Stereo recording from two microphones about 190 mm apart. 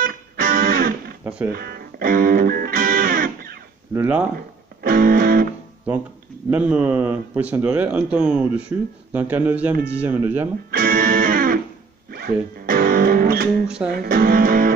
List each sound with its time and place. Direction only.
0.0 s music: 50° right (ahead or behind)
3.9 s speech: 10° right (ahead or behind)
4.8 s music: 50° right (ahead or behind)
6.5 s speech: 5° right (ahead or behind)
10.7 s music: 50° right (ahead or behind)
13.7 s speech: 5° right (ahead or behind)
13.9 s speech: 50° right (ahead or behind)